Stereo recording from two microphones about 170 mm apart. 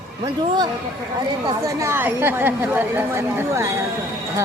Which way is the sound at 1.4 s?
20° right (ahead or behind).